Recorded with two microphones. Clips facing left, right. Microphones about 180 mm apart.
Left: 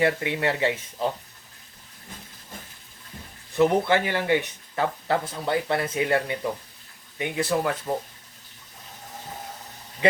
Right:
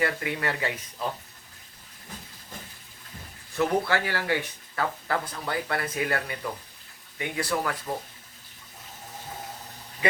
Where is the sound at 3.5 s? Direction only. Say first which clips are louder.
Left 5 dB; 20° left (ahead or behind).